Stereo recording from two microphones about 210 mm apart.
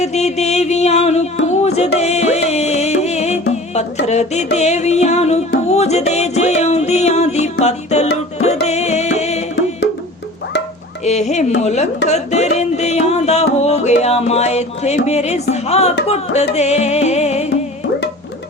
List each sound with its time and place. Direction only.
0.0 s a sound: 30° left (ahead or behind)
4.0 s music: 35° left (ahead or behind)
11.0 s music: 30° left (ahead or behind)